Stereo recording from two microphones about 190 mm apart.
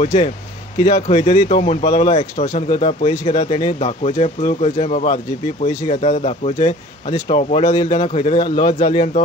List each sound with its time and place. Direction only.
0.0 s speech: 40° left (ahead or behind)